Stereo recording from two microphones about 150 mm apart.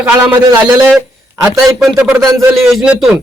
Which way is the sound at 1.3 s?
20° right (ahead or behind).